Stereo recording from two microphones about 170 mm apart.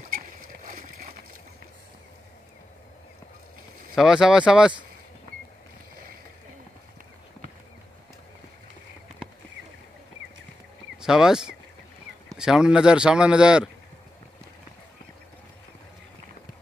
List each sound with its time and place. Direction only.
0.7 s a sound: 55° right (ahead or behind)
3.9 s speech: 5° right (ahead or behind)
11.0 s speech: 5° right (ahead or behind)